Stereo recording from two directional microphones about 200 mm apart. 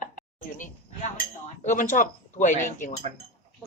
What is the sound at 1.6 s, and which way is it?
Speech, 40° left (ahead or behind).